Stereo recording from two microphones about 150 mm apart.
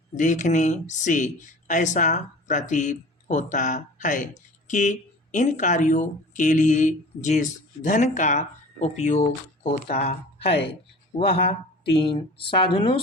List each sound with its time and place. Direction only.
0.1 s speech: 55° left (ahead or behind)
9.8 s speech: 70° left (ahead or behind)
11.2 s speech: 35° left (ahead or behind)